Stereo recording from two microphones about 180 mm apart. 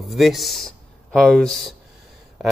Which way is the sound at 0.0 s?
Centre (ahead or behind).